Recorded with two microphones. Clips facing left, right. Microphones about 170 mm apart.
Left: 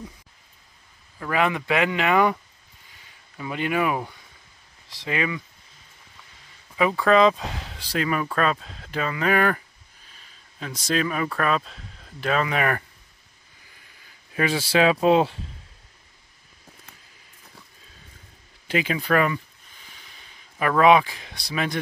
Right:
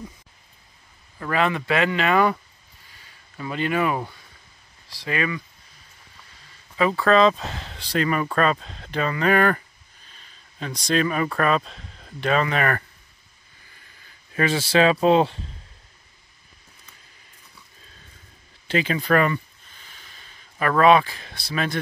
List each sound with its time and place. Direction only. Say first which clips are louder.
1.3 s speech: even; 15° left (ahead or behind)
2.9 s a sound: right 1 dB; 15° left (ahead or behind)
4.8 s speech: right 1 dB; 20° left (ahead or behind)
6.8 s speech: even; 10° left (ahead or behind)
14.3 s speech: right 2 dB; 10° left (ahead or behind)
18.7 s a sound: right 2 dB; 10° left (ahead or behind)